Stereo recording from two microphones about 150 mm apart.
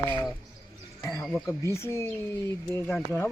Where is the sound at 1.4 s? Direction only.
20° left (ahead or behind).